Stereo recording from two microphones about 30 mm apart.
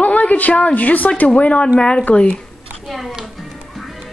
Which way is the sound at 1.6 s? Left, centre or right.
Left.